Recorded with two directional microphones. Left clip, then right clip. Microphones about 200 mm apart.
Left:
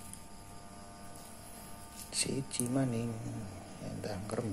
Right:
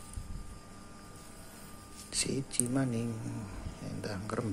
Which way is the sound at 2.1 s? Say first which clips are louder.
Right 1 dB; 10° right (ahead or behind).